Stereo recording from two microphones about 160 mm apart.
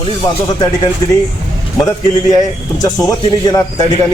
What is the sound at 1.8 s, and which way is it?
Speech, 25° left (ahead or behind).